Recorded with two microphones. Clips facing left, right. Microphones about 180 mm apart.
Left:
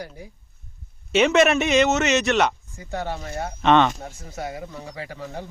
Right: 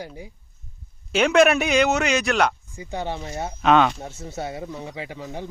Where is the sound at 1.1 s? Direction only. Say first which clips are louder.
Even; centre (ahead or behind).